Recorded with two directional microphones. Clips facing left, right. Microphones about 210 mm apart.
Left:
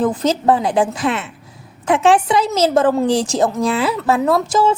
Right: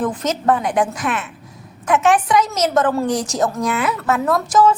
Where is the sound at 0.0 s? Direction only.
30° left (ahead or behind).